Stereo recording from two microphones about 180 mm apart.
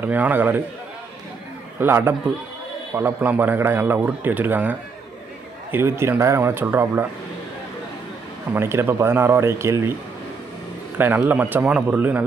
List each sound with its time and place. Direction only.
0.0 s a man's voice: 10° right (ahead or behind)
1.8 s a man's voice: 15° right (ahead or behind)
8.5 s a man's voice: 15° right (ahead or behind)
11.0 s a man's voice: 10° right (ahead or behind)